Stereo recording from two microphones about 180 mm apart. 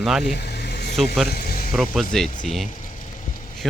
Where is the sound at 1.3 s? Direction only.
55° left (ahead or behind).